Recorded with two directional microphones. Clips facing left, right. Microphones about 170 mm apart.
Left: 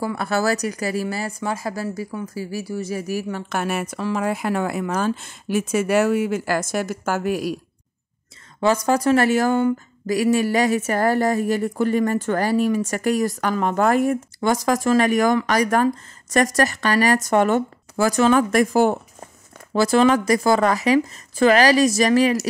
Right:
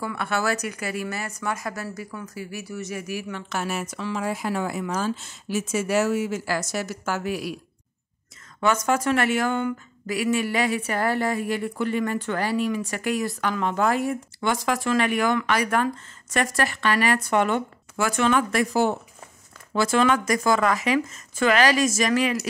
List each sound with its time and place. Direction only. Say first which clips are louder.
0.0 s speech: left 4 dB; 35° left (ahead or behind)
3.5 s speech: left 4 dB; 60° left (ahead or behind)
8.5 s speech: left 4 dB; 30° left (ahead or behind); by 19.2 s 50° left (ahead or behind)
19.7 s speech: left 5 dB; 35° left (ahead or behind)